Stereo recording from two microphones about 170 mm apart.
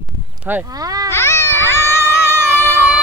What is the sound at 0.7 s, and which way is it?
Speech, 20° right (ahead or behind).